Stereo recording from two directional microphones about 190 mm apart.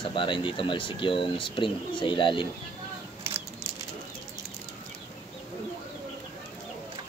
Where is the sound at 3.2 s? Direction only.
15° right (ahead or behind).